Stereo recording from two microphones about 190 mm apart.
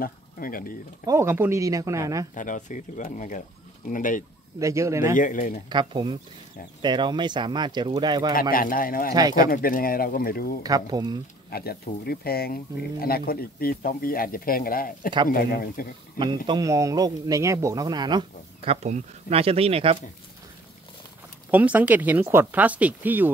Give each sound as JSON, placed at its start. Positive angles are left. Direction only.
{"t": 0.0, "sound": "speech", "side_deg": 50}
{"t": 1.0, "sound": "speech", "side_deg": -15}
{"t": 2.3, "sound": "speech", "side_deg": 40}
{"t": 4.6, "sound": "speech", "side_deg": -15}
{"t": 5.1, "sound": "speech", "side_deg": 45}
{"t": 5.7, "sound": "speech", "side_deg": -25}
{"t": 8.3, "sound": "speech", "side_deg": 50}
{"t": 9.1, "sound": "speech", "side_deg": -20}
{"t": 9.5, "sound": "speech", "side_deg": 50}
{"t": 10.6, "sound": "speech", "side_deg": -20}
{"t": 11.5, "sound": "speech", "side_deg": 55}
{"t": 16.4, "sound": "speech", "side_deg": -20}
{"t": 18.7, "sound": "speech", "side_deg": -35}
{"t": 21.5, "sound": "speech", "side_deg": -10}